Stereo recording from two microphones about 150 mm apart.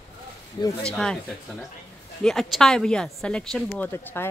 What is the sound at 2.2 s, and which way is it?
Speech, 5° left (ahead or behind).